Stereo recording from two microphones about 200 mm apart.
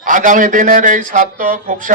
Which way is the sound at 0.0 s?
40° right (ahead or behind).